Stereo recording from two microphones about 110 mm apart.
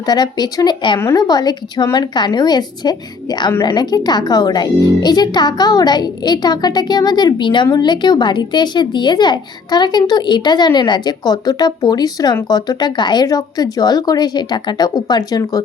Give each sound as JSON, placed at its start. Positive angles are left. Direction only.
{"t": 0.0, "sound": "speech", "side_deg": 40}